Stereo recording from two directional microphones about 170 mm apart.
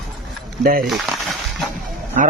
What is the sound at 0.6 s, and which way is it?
Speech, 60° right (ahead or behind).